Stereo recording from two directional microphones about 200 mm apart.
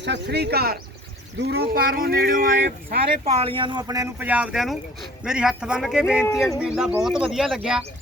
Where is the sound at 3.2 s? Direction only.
30° right (ahead or behind).